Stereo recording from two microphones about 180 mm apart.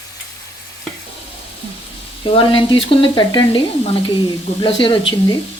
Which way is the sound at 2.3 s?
30° left (ahead or behind).